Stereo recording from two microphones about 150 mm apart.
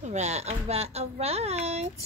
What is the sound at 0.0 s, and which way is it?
Speech, 50° right (ahead or behind).